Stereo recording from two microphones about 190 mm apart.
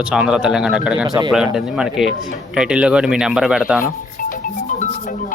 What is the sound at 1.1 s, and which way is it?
Speech, 20° right (ahead or behind).